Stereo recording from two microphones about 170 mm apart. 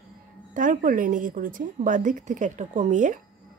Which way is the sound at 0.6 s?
50° right (ahead or behind).